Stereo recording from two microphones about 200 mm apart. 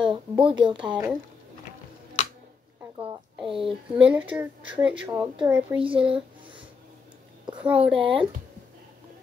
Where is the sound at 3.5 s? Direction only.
25° right (ahead or behind).